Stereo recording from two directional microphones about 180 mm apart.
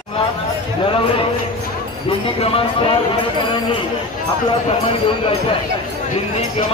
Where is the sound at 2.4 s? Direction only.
30° left (ahead or behind).